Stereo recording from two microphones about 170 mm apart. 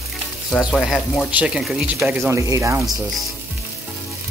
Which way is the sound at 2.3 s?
15° right (ahead or behind).